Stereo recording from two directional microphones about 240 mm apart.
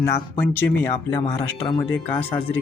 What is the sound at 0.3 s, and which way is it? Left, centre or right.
Speech, centre.